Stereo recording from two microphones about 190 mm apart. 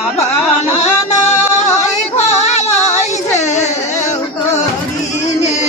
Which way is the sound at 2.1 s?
35° left (ahead or behind).